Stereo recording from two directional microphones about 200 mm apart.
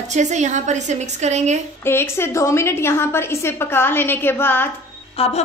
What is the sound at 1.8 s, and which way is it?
A woman's voice, 10° left (ahead or behind).